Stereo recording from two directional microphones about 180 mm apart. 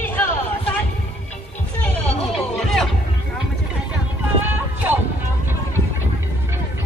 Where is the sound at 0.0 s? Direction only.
10° left (ahead or behind).